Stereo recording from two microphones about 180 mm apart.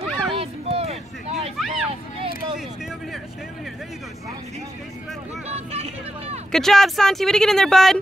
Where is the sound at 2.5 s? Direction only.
Centre (ahead or behind).